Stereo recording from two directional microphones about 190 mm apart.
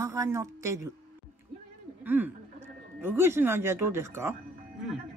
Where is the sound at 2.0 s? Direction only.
10° right (ahead or behind).